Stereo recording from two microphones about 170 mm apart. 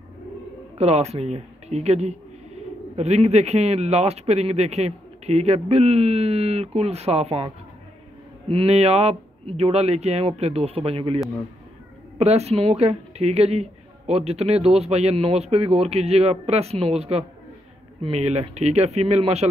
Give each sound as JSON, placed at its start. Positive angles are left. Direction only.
{"t": 0.7, "sound": "a man's voice", "side_deg": -40}
{"t": 12.2, "sound": "a man's voice", "side_deg": -40}